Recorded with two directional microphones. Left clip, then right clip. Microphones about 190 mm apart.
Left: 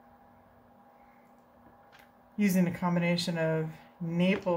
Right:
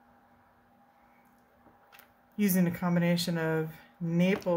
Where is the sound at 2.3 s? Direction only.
25° right (ahead or behind).